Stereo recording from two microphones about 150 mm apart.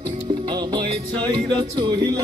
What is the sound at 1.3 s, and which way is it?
Speech, 25° right (ahead or behind).